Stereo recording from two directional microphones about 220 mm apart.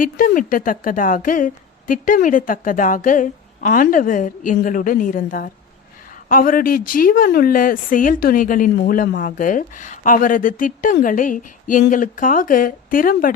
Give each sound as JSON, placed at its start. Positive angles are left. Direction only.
{"t": 0.0, "sound": "speech", "side_deg": 40}